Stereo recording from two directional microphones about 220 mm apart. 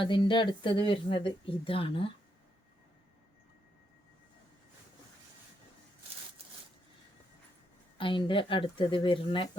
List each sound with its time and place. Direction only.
0.0 s speech: 20° left (ahead or behind)
7.9 s speech: 25° left (ahead or behind)